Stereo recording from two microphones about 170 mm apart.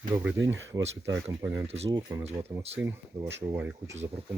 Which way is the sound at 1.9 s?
25° right (ahead or behind).